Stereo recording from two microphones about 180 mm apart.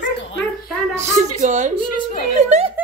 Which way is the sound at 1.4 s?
40° right (ahead or behind).